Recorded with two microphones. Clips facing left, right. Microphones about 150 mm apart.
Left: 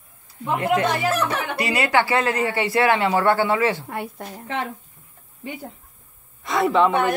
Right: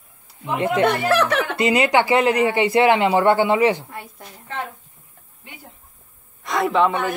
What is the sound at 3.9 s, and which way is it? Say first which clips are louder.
Speech: left 7 dB; 65° left (ahead or behind).